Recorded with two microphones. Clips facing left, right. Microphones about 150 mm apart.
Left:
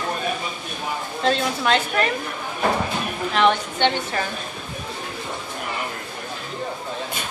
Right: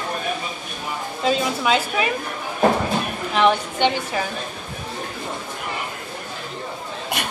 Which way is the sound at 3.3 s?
10° right (ahead or behind).